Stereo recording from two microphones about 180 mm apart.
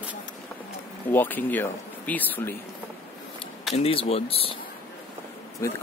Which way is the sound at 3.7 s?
35° left (ahead or behind).